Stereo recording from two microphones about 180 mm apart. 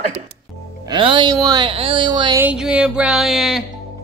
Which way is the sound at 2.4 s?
5° right (ahead or behind).